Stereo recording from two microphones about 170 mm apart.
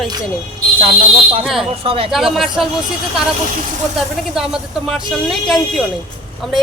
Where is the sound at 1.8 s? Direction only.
35° right (ahead or behind).